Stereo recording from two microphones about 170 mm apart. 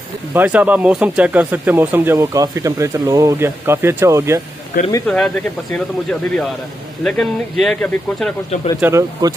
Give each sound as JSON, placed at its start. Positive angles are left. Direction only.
{"t": 0.3, "sound": "speech", "side_deg": -10}
{"t": 5.0, "sound": "speech", "side_deg": 5}
{"t": 8.8, "sound": "speech", "side_deg": -15}